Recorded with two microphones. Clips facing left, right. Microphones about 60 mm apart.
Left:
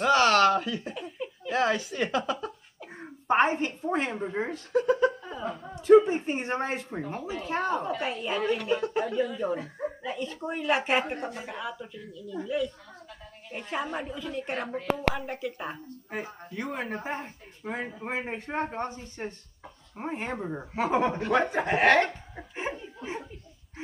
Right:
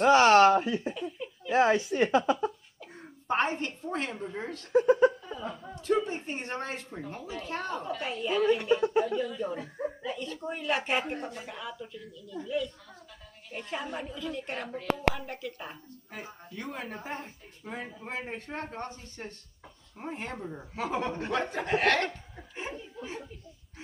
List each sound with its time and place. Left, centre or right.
0.0 s speech: right
0.9 s laughter: centre
1.5 s speech: right
3.0 s a woman's voice: left
4.7 s speech: centre
5.2 s a woman's voice: centre
22.3 s dog: left